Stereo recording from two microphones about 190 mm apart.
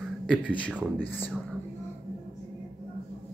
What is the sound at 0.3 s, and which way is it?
Speech, 5° left (ahead or behind).